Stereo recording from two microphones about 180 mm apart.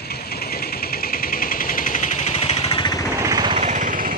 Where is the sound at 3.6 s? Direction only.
45° right (ahead or behind).